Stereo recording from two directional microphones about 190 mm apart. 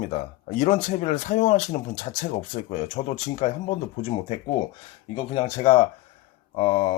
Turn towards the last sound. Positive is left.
turn(degrees=30)  # may be behind; listen again after turning